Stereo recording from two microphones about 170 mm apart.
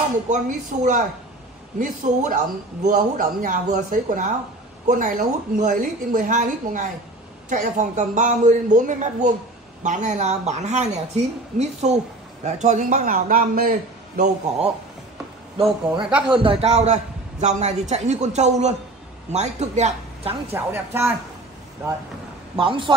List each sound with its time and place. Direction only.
0.3 s speech: 50° right (ahead or behind)
15.6 s speech: 5° right (ahead or behind)
16.4 s speech: 40° right (ahead or behind)
20.5 s speech: 15° right (ahead or behind)
22.6 s a man's voice: 30° right (ahead or behind)